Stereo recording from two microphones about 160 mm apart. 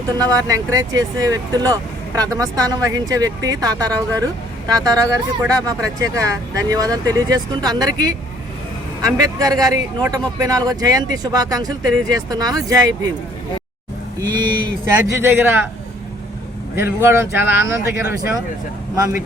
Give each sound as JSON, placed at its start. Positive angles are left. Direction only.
{"t": 0.2, "sound": "speech", "side_deg": -20}
{"t": 14.2, "sound": "speech", "side_deg": -25}
{"t": 14.8, "sound": "speech", "side_deg": -15}
{"t": 16.7, "sound": "speech", "side_deg": -15}